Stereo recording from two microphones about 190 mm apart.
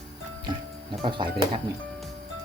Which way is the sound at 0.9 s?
25° right (ahead or behind).